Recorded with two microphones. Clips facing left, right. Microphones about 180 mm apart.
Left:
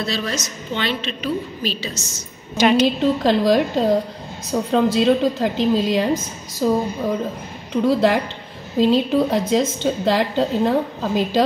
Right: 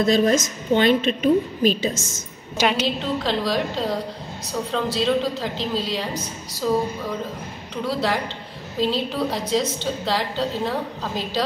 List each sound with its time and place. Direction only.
0.0 s a woman's voice: 50° right (ahead or behind)
2.5 s a woman's voice: 10° right (ahead or behind)
3.3 s a woman's voice: 50° left (ahead or behind)
7.8 s a woman's voice: 50° left (ahead or behind)